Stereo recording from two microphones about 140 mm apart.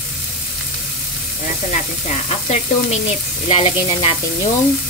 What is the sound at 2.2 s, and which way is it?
Sizzle, 50° left (ahead or behind).